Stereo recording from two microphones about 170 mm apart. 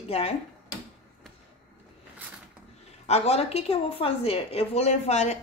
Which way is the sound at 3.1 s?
35° left (ahead or behind).